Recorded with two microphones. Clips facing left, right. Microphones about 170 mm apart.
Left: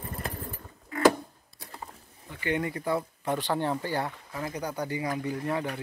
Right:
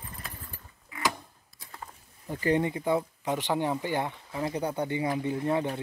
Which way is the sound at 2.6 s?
20° right (ahead or behind).